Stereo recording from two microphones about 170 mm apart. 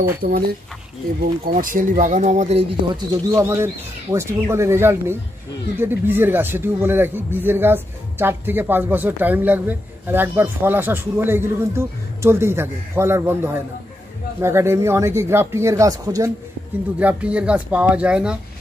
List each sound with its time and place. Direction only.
0.2 s speech: 50° right (ahead or behind)
1.5 s speech: 50° right (ahead or behind)
2.9 s speech: 25° right (ahead or behind)
17.0 s speech: 10° right (ahead or behind)